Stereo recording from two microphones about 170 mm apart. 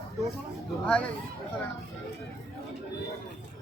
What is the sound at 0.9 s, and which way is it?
Speech, 5° left (ahead or behind).